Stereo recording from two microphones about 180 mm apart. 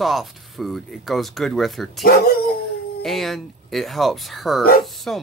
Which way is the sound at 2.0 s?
55° left (ahead or behind).